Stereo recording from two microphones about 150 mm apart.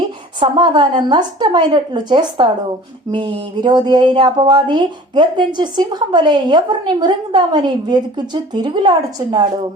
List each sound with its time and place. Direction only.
0.3 s a woman's voice: 30° right (ahead or behind)